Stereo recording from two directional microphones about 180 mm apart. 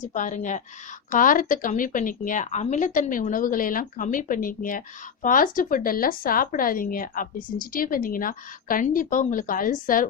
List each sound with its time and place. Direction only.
0.0 s speech: 45° left (ahead or behind)